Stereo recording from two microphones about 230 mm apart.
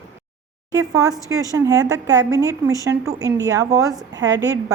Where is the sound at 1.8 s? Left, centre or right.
Right.